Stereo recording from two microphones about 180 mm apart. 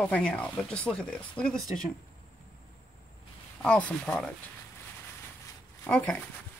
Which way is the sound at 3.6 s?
5° left (ahead or behind).